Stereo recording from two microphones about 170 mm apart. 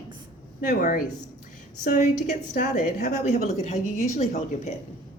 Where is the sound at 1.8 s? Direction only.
50° left (ahead or behind).